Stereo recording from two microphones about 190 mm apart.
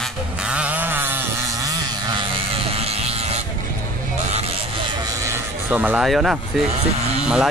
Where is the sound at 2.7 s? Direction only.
30° right (ahead or behind).